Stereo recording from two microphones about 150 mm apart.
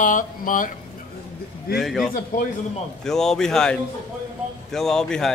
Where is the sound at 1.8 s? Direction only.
Centre (ahead or behind).